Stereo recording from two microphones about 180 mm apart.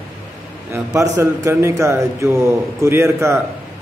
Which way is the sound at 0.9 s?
20° right (ahead or behind).